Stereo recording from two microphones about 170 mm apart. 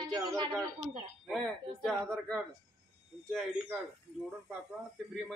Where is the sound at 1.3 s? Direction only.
Centre (ahead or behind).